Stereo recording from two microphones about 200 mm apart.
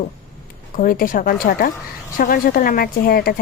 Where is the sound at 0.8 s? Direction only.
45° left (ahead or behind).